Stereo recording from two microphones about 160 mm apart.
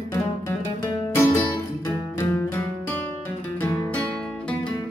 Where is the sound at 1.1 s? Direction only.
15° left (ahead or behind).